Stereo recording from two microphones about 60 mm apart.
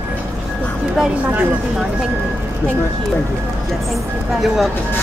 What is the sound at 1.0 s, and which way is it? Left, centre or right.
Speech, centre.